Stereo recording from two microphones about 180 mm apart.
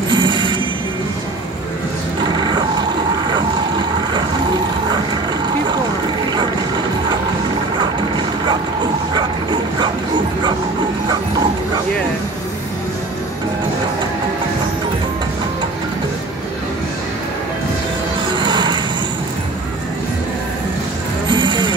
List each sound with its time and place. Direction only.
0.1 s music: 25° right (ahead or behind)
9.1 s bow-wow: 25° right (ahead or behind)
18.2 s music: 25° right (ahead or behind)
21.3 s music: 25° right (ahead or behind)